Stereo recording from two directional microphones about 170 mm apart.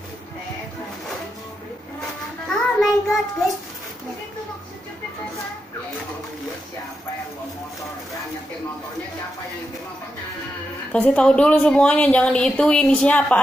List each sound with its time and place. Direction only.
2.5 s child singing: centre (ahead or behind)
10.9 s a woman's voice: 5° left (ahead or behind)